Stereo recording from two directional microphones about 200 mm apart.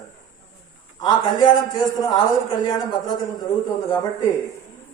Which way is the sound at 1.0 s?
20° left (ahead or behind).